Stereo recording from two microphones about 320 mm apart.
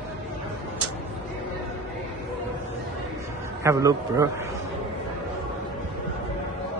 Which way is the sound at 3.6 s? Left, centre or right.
Centre.